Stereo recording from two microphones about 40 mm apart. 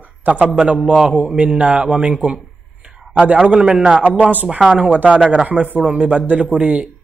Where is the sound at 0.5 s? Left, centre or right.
Right.